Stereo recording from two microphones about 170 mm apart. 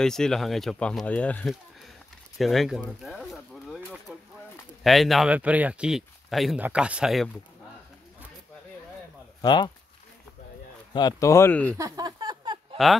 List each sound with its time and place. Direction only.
0.0 s speech: 5° left (ahead or behind)
4.1 s a sound: 5° right (ahead or behind)
4.8 s speech: centre (ahead or behind)
9.4 s speech: 25° left (ahead or behind)
10.9 s speech: 25° left (ahead or behind)
11.7 s a sound: 20° right (ahead or behind)
12.8 s speech: centre (ahead or behind)